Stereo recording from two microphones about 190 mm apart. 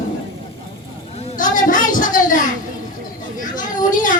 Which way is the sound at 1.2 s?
40° left (ahead or behind).